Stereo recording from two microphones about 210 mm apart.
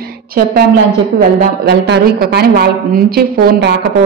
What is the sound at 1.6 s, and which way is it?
A man's voice, 50° right (ahead or behind).